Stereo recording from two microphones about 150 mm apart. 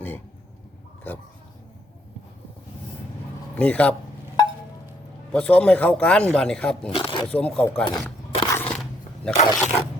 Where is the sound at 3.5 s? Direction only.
10° left (ahead or behind).